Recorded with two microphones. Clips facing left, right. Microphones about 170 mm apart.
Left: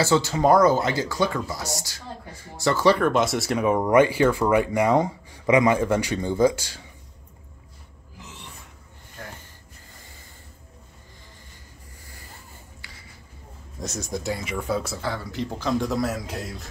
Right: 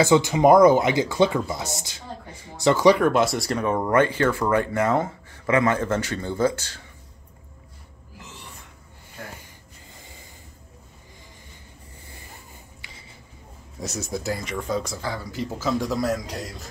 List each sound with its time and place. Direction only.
0.0 s speech: 15° right (ahead or behind); by 6.8 s 10° left (ahead or behind)
12.8 s a sound: 20° right (ahead or behind)
13.7 s speech: 5° right (ahead or behind)